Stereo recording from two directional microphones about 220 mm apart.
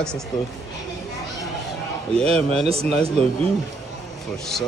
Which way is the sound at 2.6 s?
25° right (ahead or behind).